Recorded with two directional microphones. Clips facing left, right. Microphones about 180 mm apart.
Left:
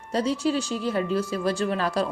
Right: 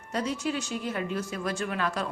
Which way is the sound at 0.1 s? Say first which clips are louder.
Left 6 dB; 30° left (ahead or behind).